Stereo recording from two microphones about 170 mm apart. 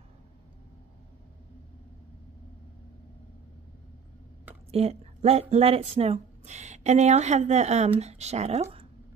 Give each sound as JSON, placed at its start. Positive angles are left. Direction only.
{"t": 4.6, "sound": "speech", "side_deg": -35}